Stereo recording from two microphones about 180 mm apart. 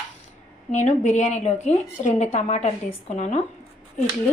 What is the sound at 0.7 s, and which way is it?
A woman's voice, 40° left (ahead or behind).